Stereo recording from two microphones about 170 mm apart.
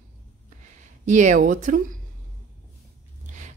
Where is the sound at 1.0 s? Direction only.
45° right (ahead or behind).